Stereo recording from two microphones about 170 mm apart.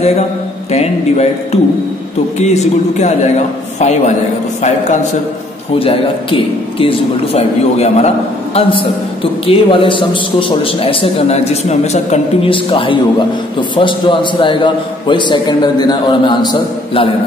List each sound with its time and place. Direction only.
0.7 s a man's voice: 40° left (ahead or behind)
5.8 s a man's voice: 35° left (ahead or behind)